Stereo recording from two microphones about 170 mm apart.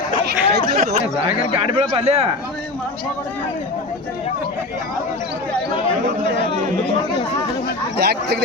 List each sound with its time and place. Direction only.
0.3 s chatter: 65° right (ahead or behind)
1.6 s speech: 35° right (ahead or behind)
7.9 s speech: 70° right (ahead or behind)